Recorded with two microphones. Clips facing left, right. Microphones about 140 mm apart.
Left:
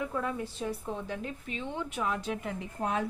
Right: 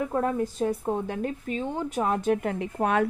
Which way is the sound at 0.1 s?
45° right (ahead or behind).